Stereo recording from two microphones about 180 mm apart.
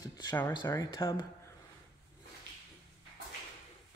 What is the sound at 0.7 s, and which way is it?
Speech, 20° left (ahead or behind).